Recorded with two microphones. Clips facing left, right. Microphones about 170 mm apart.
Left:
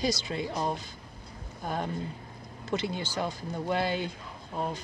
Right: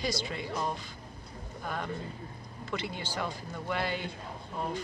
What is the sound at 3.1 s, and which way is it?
Speech, 30° left (ahead or behind).